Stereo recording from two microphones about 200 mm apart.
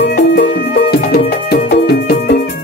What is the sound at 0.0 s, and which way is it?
Music, 55° left (ahead or behind).